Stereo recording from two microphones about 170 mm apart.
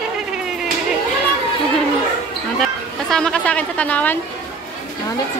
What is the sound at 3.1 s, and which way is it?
Speech, 5° left (ahead or behind).